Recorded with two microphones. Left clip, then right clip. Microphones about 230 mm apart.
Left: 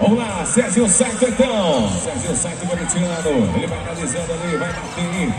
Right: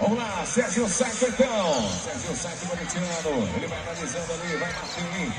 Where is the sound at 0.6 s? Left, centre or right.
Right.